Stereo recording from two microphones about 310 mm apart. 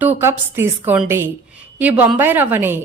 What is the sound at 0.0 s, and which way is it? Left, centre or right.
A woman's voice, centre.